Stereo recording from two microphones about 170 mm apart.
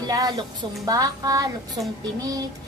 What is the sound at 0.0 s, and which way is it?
A woman's voice, 20° right (ahead or behind).